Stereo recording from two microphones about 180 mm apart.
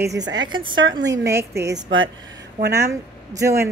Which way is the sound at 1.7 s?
90° right.